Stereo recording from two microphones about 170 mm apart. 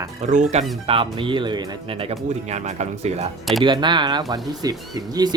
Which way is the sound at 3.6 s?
25° right (ahead or behind).